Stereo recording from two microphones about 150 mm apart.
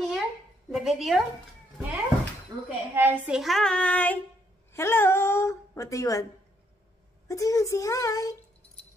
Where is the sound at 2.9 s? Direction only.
15° right (ahead or behind).